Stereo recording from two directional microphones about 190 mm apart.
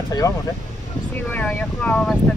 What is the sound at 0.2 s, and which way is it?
Speech, 15° left (ahead or behind).